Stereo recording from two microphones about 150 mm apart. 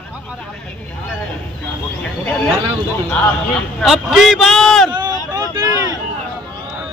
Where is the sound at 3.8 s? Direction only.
Centre (ahead or behind).